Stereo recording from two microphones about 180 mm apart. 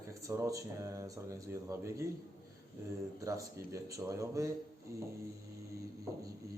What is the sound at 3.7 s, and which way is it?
Speech, 15° right (ahead or behind).